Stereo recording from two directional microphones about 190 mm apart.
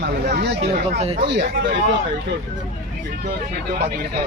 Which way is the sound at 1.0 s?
35° right (ahead or behind).